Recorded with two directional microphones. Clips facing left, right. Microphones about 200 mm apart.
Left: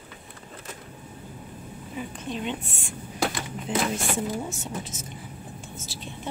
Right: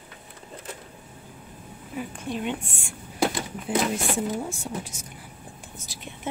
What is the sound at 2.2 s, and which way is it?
Speech, 10° right (ahead or behind).